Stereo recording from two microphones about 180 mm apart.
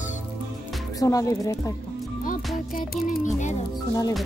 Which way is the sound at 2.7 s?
55° left (ahead or behind).